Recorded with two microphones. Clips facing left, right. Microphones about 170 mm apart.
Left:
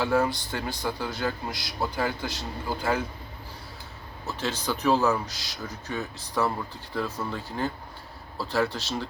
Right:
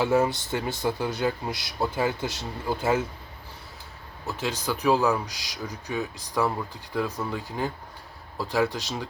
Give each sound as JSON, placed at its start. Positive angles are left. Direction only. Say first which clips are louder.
{"t": 0.0, "sound": "speech", "louder": "right 2 dB", "side_deg": -25}
{"t": 4.3, "sound": "speech", "louder": "right 1 dB", "side_deg": -15}